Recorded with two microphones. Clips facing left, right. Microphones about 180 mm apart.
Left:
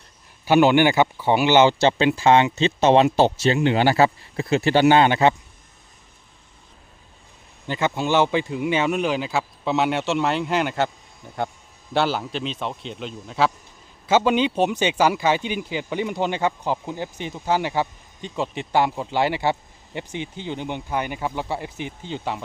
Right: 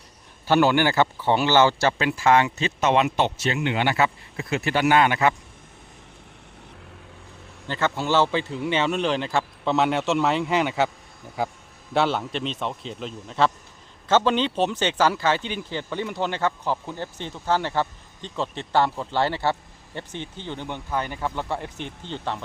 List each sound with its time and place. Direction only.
0.4 s speech: 15° left (ahead or behind)
7.7 s speech: 15° left (ahead or behind)
11.9 s a man's voice: centre (ahead or behind)